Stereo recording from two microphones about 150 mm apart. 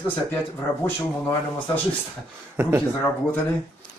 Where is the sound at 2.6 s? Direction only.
15° right (ahead or behind).